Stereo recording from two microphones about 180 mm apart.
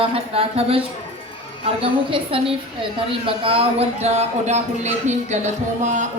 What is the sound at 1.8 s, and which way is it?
A woman's voice, 30° right (ahead or behind).